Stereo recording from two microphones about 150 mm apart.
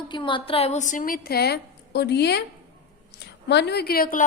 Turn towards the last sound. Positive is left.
turn(degrees=75)  # may be behind; listen again after turning